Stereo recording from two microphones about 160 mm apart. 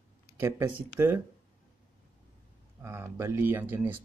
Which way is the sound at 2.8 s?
15° right (ahead or behind).